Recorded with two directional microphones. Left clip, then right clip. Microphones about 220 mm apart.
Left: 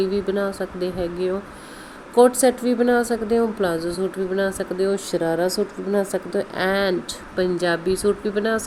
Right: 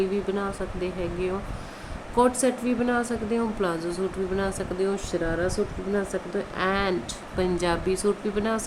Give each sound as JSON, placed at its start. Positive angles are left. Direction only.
{"t": 0.1, "sound": "a woman's voice", "side_deg": 15}